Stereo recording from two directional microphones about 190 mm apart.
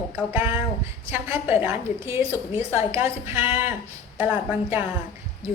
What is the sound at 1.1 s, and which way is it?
A woman's voice, 10° right (ahead or behind).